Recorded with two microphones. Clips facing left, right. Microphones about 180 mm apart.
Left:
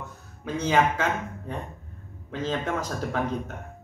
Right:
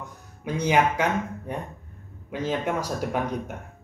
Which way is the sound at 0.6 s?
15° right (ahead or behind).